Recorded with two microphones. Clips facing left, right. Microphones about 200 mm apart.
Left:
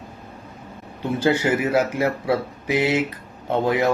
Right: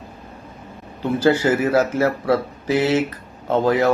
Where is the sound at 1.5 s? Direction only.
15° left (ahead or behind).